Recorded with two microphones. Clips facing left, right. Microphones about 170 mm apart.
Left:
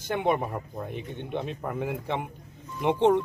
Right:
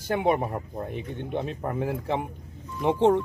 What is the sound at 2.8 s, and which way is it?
Speech, 5° right (ahead or behind).